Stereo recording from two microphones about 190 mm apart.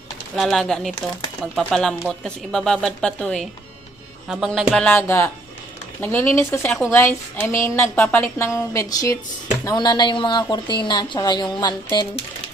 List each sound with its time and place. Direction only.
0.3 s speech: centre (ahead or behind); by 12.2 s 20° left (ahead or behind)